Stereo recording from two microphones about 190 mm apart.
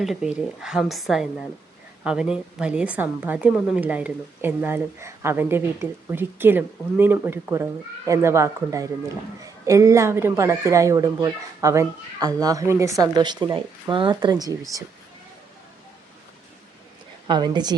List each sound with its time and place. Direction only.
0.0 s a woman's voice: centre (ahead or behind); by 14.8 s 20° right (ahead or behind)
17.2 s speech: 25° right (ahead or behind)